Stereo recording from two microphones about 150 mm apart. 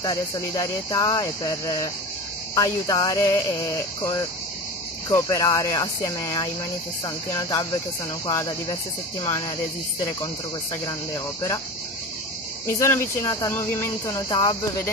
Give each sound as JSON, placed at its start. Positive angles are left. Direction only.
{"t": 0.0, "sound": "speech", "side_deg": 25}
{"t": 12.6, "sound": "speech", "side_deg": 20}